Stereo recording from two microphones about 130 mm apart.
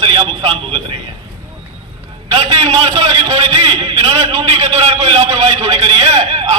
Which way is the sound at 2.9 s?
50° right (ahead or behind).